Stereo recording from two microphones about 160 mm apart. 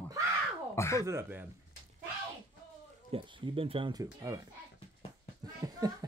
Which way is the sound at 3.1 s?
35° right (ahead or behind).